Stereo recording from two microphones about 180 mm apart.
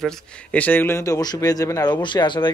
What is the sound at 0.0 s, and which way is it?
Speech, 5° left (ahead or behind).